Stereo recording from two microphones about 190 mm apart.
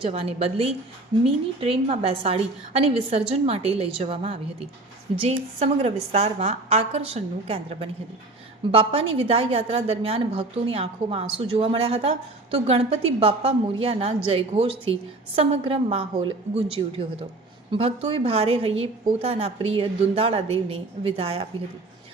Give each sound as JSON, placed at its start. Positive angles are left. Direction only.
{"t": 0.0, "sound": "a woman's voice", "side_deg": -30}
{"t": 17.7, "sound": "a woman's voice", "side_deg": -30}